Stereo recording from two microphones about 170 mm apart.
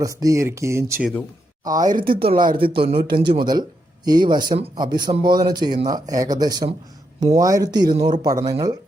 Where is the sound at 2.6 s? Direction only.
30° right (ahead or behind).